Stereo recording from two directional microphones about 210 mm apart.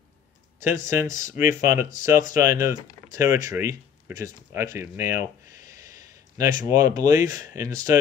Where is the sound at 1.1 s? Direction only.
15° right (ahead or behind).